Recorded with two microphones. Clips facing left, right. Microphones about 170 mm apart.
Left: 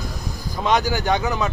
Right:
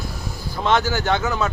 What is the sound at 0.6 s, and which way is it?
Speech, 15° left (ahead or behind).